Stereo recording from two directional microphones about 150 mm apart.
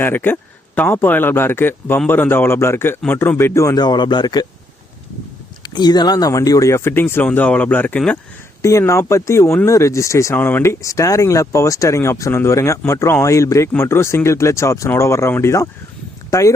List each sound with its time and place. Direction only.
0.0 s speech: 15° left (ahead or behind)
5.6 s speech: 30° left (ahead or behind); by 8.2 s 10° left (ahead or behind)
8.6 s speech: 20° left (ahead or behind)